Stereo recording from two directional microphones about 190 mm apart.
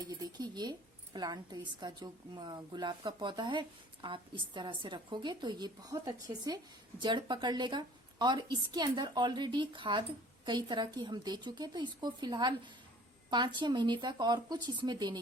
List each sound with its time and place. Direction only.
0.1 s a woman's voice: 20° right (ahead or behind)